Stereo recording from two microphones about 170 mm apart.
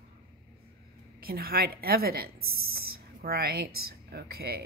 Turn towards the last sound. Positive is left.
turn(degrees=-65)  # may be behind; listen again after turning